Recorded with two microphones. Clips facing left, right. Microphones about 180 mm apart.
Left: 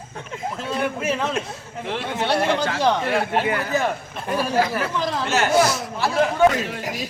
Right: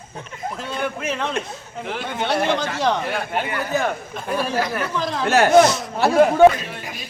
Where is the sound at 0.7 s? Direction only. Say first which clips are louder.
Left 3 dB; 5° left (ahead or behind).